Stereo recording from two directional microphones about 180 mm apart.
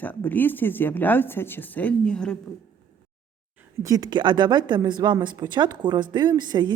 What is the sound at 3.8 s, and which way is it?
A woman's voice, 20° right (ahead or behind).